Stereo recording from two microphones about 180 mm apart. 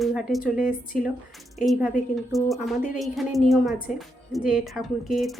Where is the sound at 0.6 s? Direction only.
50° left (ahead or behind).